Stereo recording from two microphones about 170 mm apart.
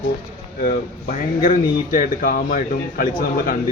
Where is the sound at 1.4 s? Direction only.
50° left (ahead or behind).